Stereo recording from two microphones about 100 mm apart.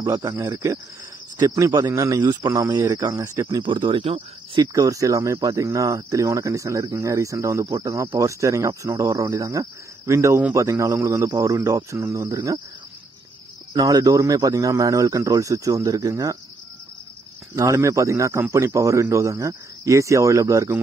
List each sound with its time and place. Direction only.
0.0 s cricket: 30° right (ahead or behind)
1.4 s speech: 35° right (ahead or behind)
2.2 s speech: 45° right (ahead or behind)
2.8 s speech: 30° right (ahead or behind)
3.5 s speech: 50° right (ahead or behind)
4.6 s speech: 35° right (ahead or behind)
13.7 s speech: 40° right (ahead or behind)
17.6 s speech: 30° right (ahead or behind)